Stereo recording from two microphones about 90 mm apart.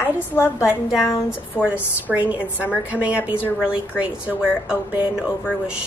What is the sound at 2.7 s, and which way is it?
Speech, 15° right (ahead or behind).